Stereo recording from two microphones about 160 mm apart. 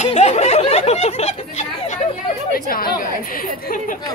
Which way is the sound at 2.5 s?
65° left (ahead or behind).